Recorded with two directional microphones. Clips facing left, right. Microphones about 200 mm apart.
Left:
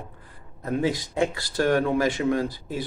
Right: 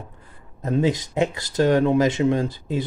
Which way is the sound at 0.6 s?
20° right (ahead or behind).